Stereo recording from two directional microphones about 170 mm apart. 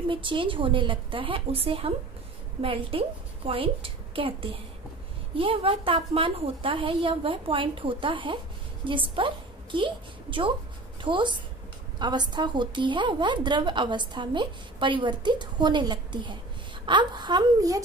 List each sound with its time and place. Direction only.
0.1 s a woman's voice: 30° right (ahead or behind)